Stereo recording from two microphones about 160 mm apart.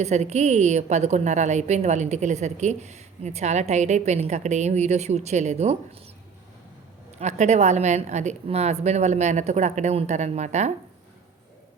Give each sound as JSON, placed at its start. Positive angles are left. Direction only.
{"t": 0.0, "sound": "a woman's voice", "side_deg": -45}
{"t": 7.2, "sound": "a woman's voice", "side_deg": -45}